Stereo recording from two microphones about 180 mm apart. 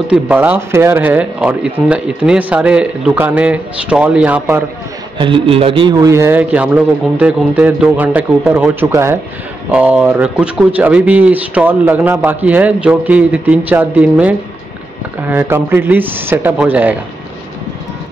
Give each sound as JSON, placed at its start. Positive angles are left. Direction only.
{"t": 0.1, "sound": "speech", "side_deg": -10}
{"t": 5.2, "sound": "speech", "side_deg": -30}